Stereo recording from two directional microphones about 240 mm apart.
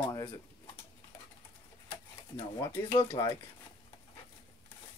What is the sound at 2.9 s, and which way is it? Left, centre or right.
Speech, left.